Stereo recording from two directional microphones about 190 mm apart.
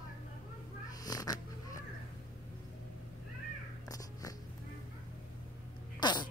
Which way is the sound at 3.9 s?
20° left (ahead or behind).